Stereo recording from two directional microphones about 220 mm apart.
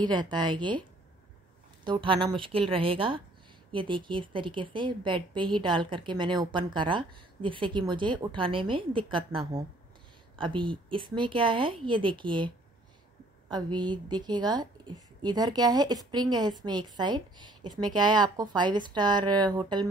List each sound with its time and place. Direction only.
0.0 s a woman's voice: 20° right (ahead or behind)
1.9 s a woman's voice: 20° right (ahead or behind)